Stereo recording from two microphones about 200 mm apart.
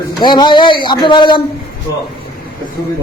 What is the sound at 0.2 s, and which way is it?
Speech, 20° left (ahead or behind).